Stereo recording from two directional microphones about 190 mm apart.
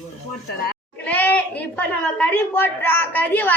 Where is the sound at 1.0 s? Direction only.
10° left (ahead or behind).